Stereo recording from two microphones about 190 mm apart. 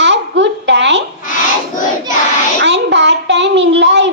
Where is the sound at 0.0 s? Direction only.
65° right (ahead or behind).